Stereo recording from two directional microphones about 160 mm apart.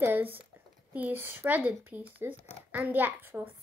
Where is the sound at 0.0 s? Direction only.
10° right (ahead or behind).